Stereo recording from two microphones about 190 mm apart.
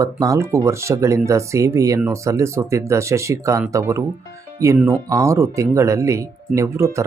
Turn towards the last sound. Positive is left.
turn(degrees=-15)  # may be behind; listen again after turning